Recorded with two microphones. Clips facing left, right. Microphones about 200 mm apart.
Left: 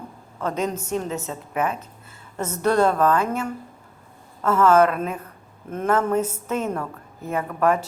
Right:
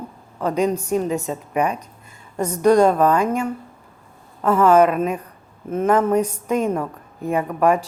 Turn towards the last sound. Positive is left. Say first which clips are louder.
# right 3 dB
turn(degrees=-15)  # may be behind; listen again after turning